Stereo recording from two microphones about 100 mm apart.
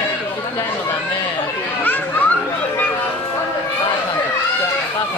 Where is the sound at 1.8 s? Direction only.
20° left (ahead or behind).